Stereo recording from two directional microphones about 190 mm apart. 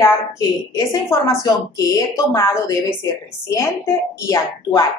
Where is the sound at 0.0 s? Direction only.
15° left (ahead or behind).